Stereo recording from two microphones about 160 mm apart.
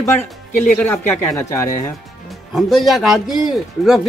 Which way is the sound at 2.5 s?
Centre (ahead or behind).